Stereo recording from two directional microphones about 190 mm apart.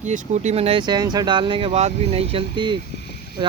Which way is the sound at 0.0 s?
40° right (ahead or behind).